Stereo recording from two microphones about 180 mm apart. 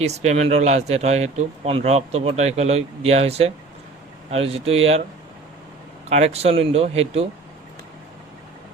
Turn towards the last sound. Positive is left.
turn(degrees=-35)  # may be behind; listen again after turning